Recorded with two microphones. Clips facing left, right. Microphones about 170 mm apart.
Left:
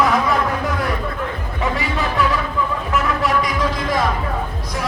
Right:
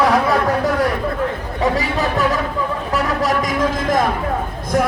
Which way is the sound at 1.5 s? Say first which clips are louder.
Right 3 dB; 40° right (ahead or behind).